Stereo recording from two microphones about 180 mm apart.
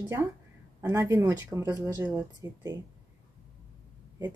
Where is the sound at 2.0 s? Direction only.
10° right (ahead or behind).